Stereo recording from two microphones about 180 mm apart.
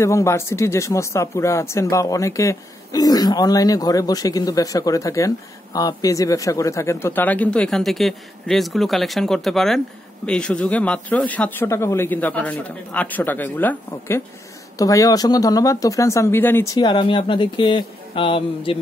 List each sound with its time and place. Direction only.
0.0 s speech: 15° left (ahead or behind)